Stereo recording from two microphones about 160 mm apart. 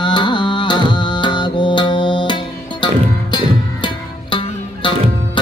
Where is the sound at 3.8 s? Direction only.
30° left (ahead or behind).